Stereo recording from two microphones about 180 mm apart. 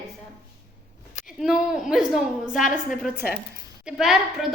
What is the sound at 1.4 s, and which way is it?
A woman's voice, 5° right (ahead or behind).